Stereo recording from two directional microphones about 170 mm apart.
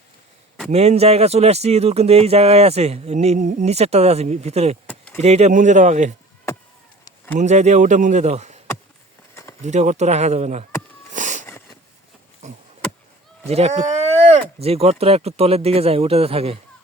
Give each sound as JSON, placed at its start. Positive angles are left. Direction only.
{"t": 0.7, "sound": "a man's voice", "side_deg": -40}
{"t": 7.3, "sound": "a man's voice", "side_deg": -45}
{"t": 9.3, "sound": "a sound", "side_deg": 20}
{"t": 9.6, "sound": "speech", "side_deg": -45}
{"t": 11.1, "sound": "wheeze", "side_deg": -45}
{"t": 12.4, "sound": "a sound", "side_deg": -40}
{"t": 13.4, "sound": "speech", "side_deg": -40}